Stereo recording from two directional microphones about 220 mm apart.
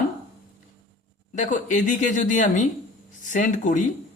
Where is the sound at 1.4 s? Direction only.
35° left (ahead or behind).